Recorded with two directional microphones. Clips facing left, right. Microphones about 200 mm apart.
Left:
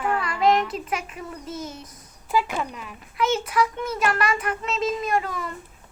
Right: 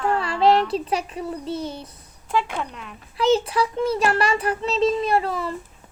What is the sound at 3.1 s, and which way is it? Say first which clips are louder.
A child's voice: right 4 dB; 30° right (ahead or behind).